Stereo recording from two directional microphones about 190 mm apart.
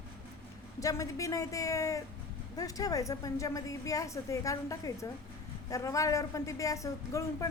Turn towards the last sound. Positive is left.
turn(degrees=15)  # may be behind; listen again after turning